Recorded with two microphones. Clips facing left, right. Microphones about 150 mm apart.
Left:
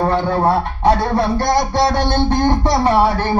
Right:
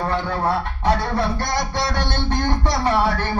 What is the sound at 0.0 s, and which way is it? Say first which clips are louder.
A man's voice: left 6 dB; 35° left (ahead or behind).